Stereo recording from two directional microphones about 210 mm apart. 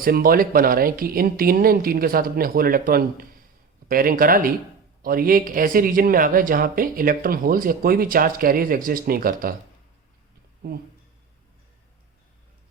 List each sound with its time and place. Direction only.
0.0 s speech: 45° right (ahead or behind)